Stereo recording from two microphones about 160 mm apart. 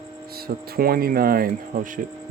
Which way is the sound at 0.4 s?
70° right (ahead or behind).